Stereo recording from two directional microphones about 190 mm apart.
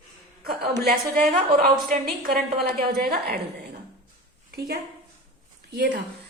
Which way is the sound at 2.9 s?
55° right (ahead or behind).